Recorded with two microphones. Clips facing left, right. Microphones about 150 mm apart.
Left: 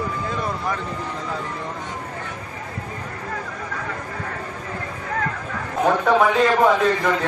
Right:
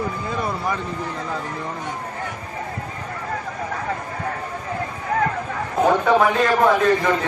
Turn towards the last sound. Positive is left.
turn(degrees=0)  # may be behind; listen again after turning